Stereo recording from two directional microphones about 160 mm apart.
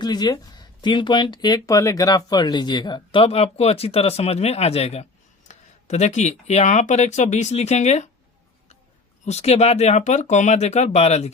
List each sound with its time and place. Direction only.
0.0 s speech: 25° left (ahead or behind)
5.5 s a sound: 45° left (ahead or behind)
6.5 s speech: 45° left (ahead or behind)
9.2 s speech: 40° left (ahead or behind)